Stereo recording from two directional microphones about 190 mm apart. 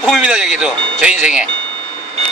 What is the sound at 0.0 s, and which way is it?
Speech, centre (ahead or behind).